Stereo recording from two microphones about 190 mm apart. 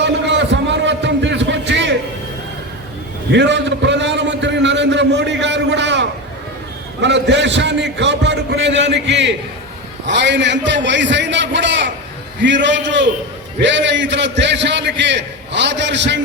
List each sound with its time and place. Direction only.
0.0 s music: 70° right (ahead or behind)
3.3 s a sound: 70° right (ahead or behind)
7.0 s a man's voice: 70° right (ahead or behind)